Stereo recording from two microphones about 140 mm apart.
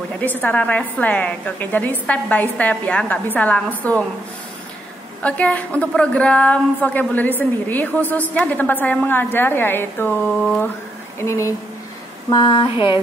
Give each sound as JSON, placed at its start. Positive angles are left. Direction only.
{"t": 0.2, "sound": "a woman's voice", "side_deg": 10}
{"t": 5.2, "sound": "a woman's voice", "side_deg": 10}
{"t": 11.1, "sound": "speech", "side_deg": 20}
{"t": 12.3, "sound": "a sound", "side_deg": 30}